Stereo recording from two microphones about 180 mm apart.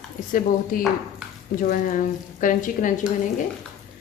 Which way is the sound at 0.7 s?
50° left (ahead or behind).